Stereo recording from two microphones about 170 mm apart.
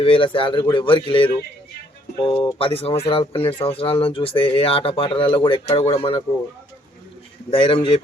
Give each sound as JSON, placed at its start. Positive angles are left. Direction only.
{"t": 0.0, "sound": "speech", "side_deg": 30}
{"t": 7.5, "sound": "speech", "side_deg": 30}